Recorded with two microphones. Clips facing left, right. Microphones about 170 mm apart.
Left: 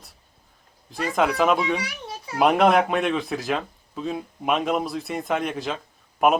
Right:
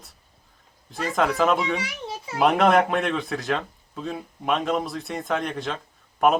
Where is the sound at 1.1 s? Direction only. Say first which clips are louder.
Left 1 dB; centre (ahead or behind).